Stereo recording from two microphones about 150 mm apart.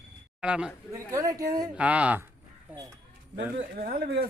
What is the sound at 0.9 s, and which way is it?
Speech, 20° right (ahead or behind).